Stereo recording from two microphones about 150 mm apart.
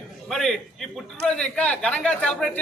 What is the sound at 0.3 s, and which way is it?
A man's voice, centre (ahead or behind).